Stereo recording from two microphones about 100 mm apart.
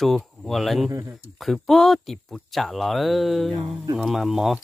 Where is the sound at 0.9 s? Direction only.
30° right (ahead or behind).